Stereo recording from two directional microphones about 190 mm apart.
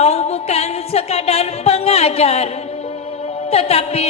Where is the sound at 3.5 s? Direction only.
30° left (ahead or behind).